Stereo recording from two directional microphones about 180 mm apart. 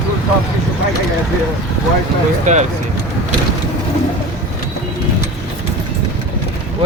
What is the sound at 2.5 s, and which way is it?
Speech, 45° right (ahead or behind).